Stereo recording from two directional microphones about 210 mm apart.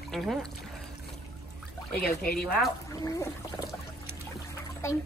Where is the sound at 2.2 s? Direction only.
45° left (ahead or behind).